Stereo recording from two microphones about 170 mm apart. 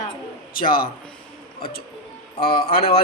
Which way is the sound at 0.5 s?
55° left (ahead or behind).